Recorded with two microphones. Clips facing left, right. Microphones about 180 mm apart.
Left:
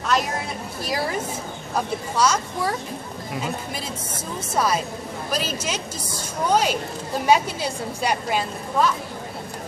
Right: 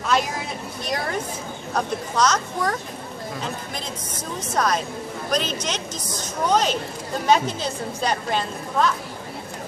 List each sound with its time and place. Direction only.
0.8 s a woman's voice: 5° left (ahead or behind)
4.6 s a woman's voice: 5° left (ahead or behind)